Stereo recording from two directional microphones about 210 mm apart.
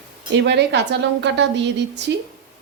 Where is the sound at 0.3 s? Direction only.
55° right (ahead or behind).